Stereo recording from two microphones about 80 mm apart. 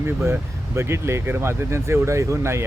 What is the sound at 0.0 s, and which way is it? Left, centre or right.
Speech, right.